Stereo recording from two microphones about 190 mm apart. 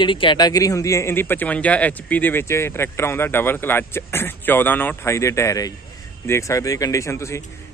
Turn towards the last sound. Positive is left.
turn(degrees=15)  # may be behind; listen again after turning